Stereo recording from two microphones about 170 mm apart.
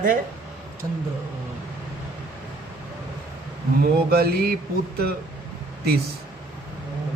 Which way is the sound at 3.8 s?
65° right (ahead or behind).